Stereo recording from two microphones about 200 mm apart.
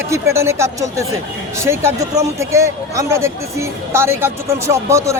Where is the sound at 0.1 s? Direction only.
15° right (ahead or behind).